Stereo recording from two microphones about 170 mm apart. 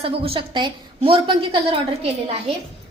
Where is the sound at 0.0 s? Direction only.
35° right (ahead or behind).